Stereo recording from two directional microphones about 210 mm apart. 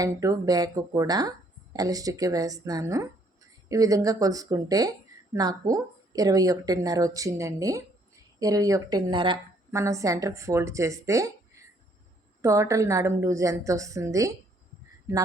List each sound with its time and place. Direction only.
0.0 s speech: 15° right (ahead or behind)